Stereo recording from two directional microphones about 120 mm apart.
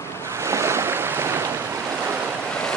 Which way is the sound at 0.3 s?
25° right (ahead or behind).